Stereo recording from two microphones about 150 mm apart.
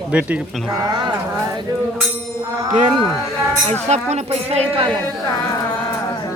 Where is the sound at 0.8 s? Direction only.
30° right (ahead or behind).